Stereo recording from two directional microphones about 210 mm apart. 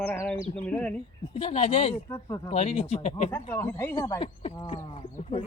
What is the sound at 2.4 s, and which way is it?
Speech, 30° left (ahead or behind).